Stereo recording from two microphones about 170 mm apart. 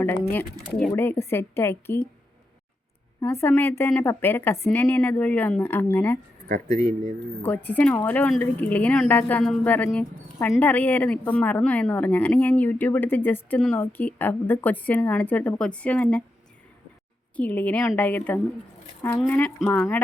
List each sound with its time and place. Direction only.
0.0 s a woman's voice: 10° left (ahead or behind)
3.2 s a woman's voice: 15° left (ahead or behind)
7.4 s a woman's voice: 10° left (ahead or behind)
17.3 s a woman's voice: 10° left (ahead or behind)